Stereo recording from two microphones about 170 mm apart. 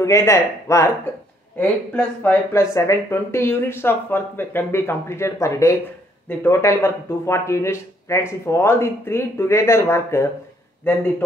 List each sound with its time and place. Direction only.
0.0 s speech: 15° left (ahead or behind)